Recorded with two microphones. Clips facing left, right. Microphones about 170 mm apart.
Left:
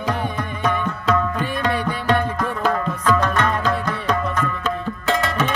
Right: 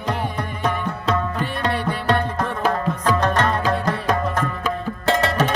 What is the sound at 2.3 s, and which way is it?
Music, 35° right (ahead or behind).